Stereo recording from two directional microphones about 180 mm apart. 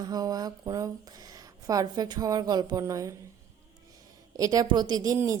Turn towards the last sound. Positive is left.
turn(degrees=-15)  # may be behind; listen again after turning